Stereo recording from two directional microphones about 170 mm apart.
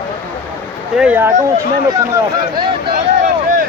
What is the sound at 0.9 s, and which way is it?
Speech, 10° right (ahead or behind).